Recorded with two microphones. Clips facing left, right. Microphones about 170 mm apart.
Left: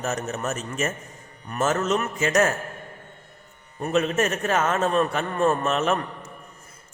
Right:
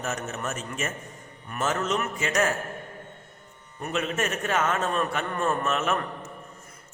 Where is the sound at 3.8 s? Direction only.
40° left (ahead or behind).